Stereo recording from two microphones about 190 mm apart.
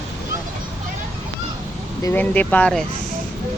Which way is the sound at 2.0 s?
10° left (ahead or behind).